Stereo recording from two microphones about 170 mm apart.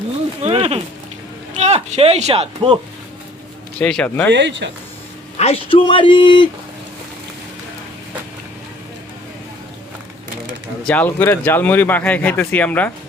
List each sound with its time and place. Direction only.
0.4 s a sound: 35° right (ahead or behind)
1.5 s speech: 40° right (ahead or behind)
3.8 s speech: 5° left (ahead or behind)
4.3 s speech: 90° right
5.4 s speech: 35° left (ahead or behind)
10.8 s speech: 10° left (ahead or behind)